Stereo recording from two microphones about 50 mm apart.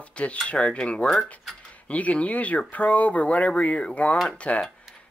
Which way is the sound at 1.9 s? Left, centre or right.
Left.